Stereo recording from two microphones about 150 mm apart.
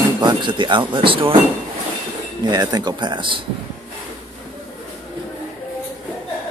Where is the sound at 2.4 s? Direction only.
25° right (ahead or behind).